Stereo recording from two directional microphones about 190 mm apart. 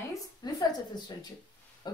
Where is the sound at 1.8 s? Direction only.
25° left (ahead or behind).